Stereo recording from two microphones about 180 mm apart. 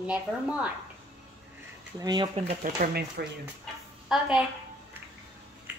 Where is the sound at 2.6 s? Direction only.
55° right (ahead or behind).